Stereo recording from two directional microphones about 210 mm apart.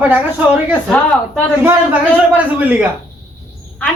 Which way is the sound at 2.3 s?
10° right (ahead or behind).